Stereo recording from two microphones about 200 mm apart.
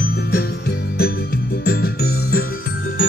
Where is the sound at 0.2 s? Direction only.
50° left (ahead or behind).